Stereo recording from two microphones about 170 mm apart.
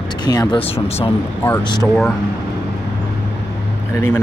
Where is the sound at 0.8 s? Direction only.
35° left (ahead or behind).